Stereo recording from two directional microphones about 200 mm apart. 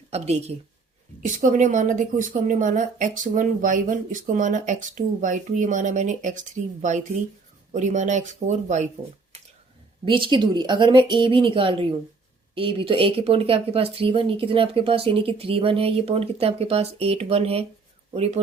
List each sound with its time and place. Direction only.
0.1 s speech: 30° right (ahead or behind)
7.7 s speech: 35° right (ahead or behind)
10.1 s a man's voice: 25° right (ahead or behind)